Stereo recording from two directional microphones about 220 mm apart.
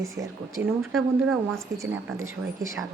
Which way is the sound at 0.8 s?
Centre (ahead or behind).